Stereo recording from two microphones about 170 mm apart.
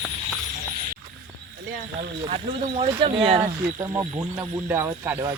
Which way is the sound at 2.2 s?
35° right (ahead or behind).